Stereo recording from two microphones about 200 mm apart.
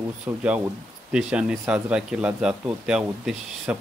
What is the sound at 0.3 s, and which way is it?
Speech, 15° right (ahead or behind).